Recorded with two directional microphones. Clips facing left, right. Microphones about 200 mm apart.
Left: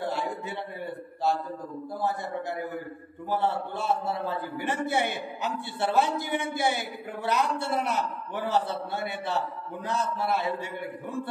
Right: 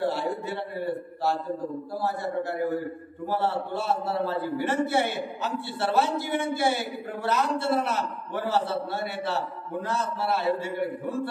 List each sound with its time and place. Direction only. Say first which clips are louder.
0.0 s a man's voice: right 4 dB; 15° left (ahead or behind)
2.0 s a man's voice: right 2 dB; 20° left (ahead or behind)